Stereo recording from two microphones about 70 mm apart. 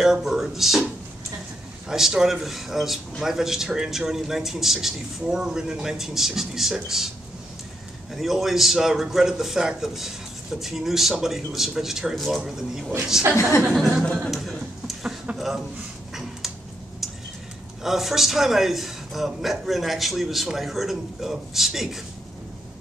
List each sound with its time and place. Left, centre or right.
0.0 s a man's voice: centre
1.9 s a man's voice: centre
8.1 s a man's voice: centre
13.2 s speech: right
14.2 s a sound: centre
17.8 s a man's voice: centre